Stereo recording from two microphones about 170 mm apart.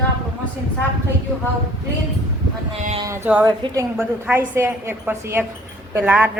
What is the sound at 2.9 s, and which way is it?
A woman's voice, 15° right (ahead or behind).